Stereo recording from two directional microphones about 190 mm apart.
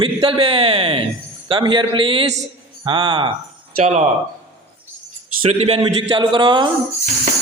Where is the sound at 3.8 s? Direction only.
35° right (ahead or behind).